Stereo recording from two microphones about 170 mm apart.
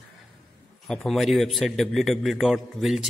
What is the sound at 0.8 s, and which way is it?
A man's voice, centre (ahead or behind).